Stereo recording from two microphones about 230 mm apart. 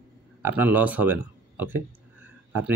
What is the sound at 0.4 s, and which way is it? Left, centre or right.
Speech, centre.